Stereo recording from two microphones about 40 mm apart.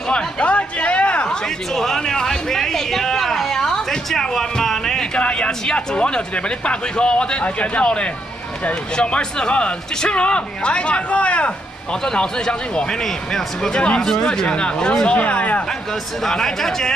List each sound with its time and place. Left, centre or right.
0.1 s a sound: left
1.7 s a sound: centre
5.2 s speech: left
11.9 s a man's voice: centre
13.7 s speech: left
14.0 s speech: centre; by 15.6 s left
16.2 s a man's voice: centre